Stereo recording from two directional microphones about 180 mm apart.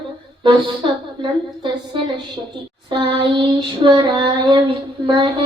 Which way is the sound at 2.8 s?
25° right (ahead or behind).